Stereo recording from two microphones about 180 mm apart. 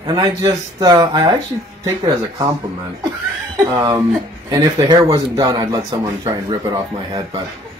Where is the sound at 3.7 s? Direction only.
25° right (ahead or behind).